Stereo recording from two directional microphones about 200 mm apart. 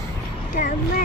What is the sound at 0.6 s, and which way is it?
Speech, 40° left (ahead or behind).